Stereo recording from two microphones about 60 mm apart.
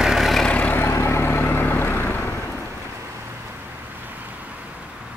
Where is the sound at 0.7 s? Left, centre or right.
Left.